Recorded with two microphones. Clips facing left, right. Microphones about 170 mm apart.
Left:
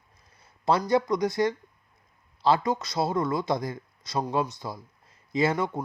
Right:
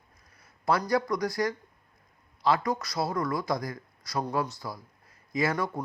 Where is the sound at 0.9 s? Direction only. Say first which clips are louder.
Left 3 dB; 25° left (ahead or behind).